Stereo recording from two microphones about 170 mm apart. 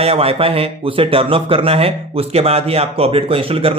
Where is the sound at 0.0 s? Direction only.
35° right (ahead or behind).